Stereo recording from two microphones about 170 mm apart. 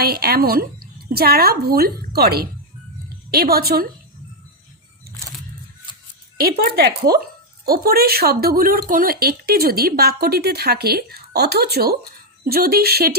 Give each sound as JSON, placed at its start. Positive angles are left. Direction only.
{"t": 0.0, "sound": "speech", "side_deg": -65}
{"t": 6.7, "sound": "speech", "side_deg": -65}